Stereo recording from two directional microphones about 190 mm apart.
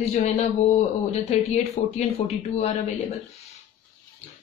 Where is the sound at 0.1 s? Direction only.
40° left (ahead or behind).